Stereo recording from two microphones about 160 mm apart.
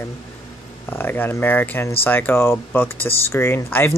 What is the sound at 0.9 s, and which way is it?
Speech, 15° left (ahead or behind).